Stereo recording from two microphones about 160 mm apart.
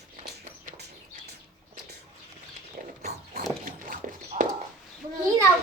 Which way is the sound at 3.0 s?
70° right (ahead or behind).